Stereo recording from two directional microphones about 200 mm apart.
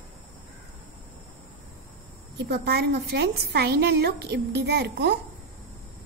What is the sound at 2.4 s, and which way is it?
A woman's voice, 55° right (ahead or behind).